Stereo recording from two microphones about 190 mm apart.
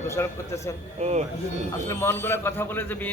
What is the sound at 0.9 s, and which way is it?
Speech, 35° right (ahead or behind).